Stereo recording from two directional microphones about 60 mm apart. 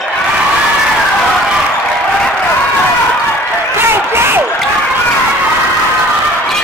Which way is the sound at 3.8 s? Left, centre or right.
Right.